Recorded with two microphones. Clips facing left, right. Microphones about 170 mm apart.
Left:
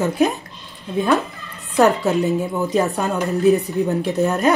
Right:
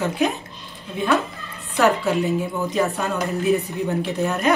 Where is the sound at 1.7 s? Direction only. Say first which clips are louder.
Left 3 dB; 40° left (ahead or behind).